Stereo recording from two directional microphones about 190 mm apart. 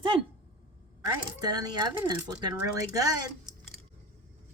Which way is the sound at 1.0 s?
20° right (ahead or behind).